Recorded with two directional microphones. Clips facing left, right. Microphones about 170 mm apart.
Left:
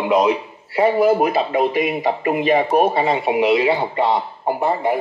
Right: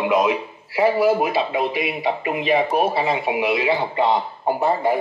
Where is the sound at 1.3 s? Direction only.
45° left (ahead or behind).